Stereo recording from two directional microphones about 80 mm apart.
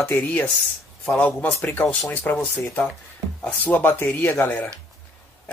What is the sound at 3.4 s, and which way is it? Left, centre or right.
Speech, left.